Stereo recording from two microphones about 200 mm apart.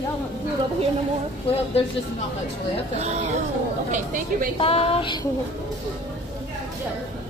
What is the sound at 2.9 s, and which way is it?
Speech, 35° right (ahead or behind).